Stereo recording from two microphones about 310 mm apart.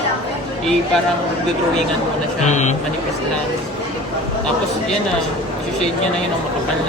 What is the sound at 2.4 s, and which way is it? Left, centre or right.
Speech, left.